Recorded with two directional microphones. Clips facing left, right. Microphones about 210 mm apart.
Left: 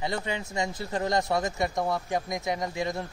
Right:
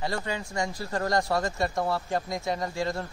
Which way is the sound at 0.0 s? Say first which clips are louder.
Even; 20° left (ahead or behind).